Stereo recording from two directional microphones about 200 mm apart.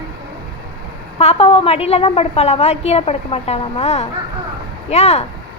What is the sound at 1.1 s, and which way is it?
A woman's voice, 30° left (ahead or behind).